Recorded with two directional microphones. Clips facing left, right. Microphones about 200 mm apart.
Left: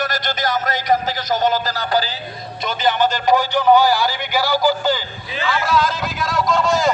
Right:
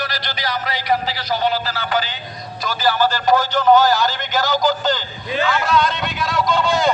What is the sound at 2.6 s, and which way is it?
Speech, 20° left (ahead or behind).